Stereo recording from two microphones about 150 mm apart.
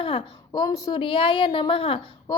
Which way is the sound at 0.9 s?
35° left (ahead or behind).